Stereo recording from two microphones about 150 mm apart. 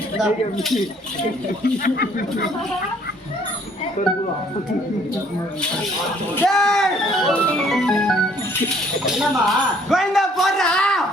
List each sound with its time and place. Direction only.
0.2 s speech: centre (ahead or behind)
1.6 s speech: 80° left
6.3 s speech: 5° left (ahead or behind)